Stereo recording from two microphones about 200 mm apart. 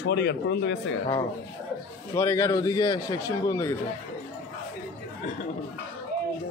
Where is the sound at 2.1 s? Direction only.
15° left (ahead or behind).